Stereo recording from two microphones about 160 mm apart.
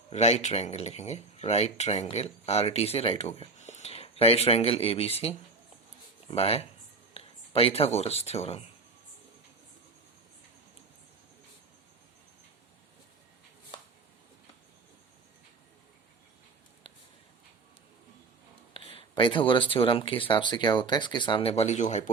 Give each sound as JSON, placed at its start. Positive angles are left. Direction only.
{"t": 0.1, "sound": "speech", "side_deg": 45}
{"t": 18.7, "sound": "speech", "side_deg": 35}